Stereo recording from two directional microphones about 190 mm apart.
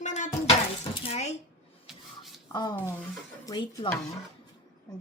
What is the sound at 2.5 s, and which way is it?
Speech, 20° left (ahead or behind).